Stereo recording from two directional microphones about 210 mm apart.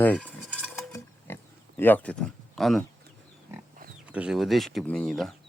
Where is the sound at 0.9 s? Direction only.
10° left (ahead or behind).